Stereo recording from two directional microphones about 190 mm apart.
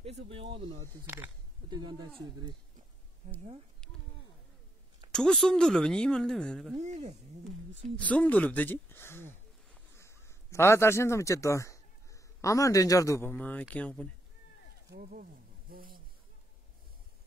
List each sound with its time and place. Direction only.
0.0 s speech: 30° right (ahead or behind)
1.0 s speech: 10° right (ahead or behind)
1.7 s speech: 25° right (ahead or behind)
3.8 s a sound: 5° left (ahead or behind)
5.1 s speech: 5° left (ahead or behind)
6.8 s speech: 35° right (ahead or behind)
7.9 s a man's voice: 5° left (ahead or behind)
15.0 s speech: 45° right (ahead or behind)
15.7 s a sound: 50° right (ahead or behind)